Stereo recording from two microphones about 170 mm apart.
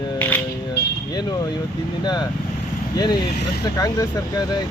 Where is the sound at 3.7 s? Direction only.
20° left (ahead or behind).